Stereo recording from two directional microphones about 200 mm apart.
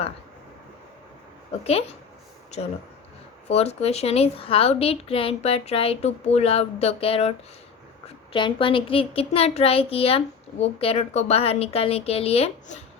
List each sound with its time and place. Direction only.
1.6 s a woman's voice: 30° left (ahead or behind)
3.5 s a woman's voice: 30° left (ahead or behind)